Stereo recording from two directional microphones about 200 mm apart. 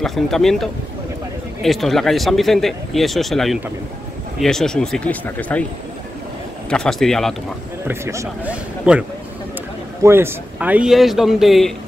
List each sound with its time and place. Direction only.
0.0 s speech: centre (ahead or behind)
6.7 s speech: 5° left (ahead or behind)
7.9 s a man's voice: 15° right (ahead or behind)
10.0 s speech: 10° right (ahead or behind)